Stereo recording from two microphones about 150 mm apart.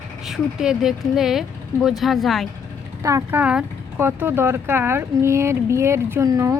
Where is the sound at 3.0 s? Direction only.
20° right (ahead or behind).